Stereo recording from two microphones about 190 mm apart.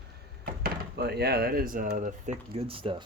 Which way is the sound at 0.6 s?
55° right (ahead or behind).